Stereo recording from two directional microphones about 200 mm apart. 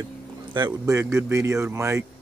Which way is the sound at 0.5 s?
20° right (ahead or behind).